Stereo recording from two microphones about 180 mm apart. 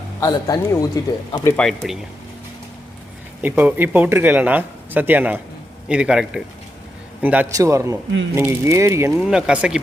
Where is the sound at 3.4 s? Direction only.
10° right (ahead or behind).